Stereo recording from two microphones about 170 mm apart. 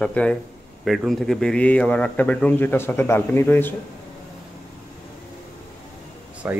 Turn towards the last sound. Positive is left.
turn(degrees=-10)  # may be behind; listen again after turning